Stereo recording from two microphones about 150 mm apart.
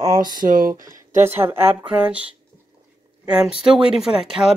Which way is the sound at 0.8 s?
15° right (ahead or behind).